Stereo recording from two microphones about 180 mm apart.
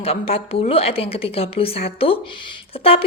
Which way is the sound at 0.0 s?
30° left (ahead or behind).